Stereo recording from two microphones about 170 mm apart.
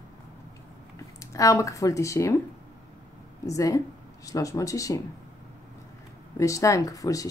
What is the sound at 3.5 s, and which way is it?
Speech, 20° left (ahead or behind).